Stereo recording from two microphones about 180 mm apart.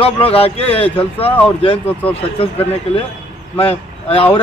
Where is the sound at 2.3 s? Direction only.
30° left (ahead or behind).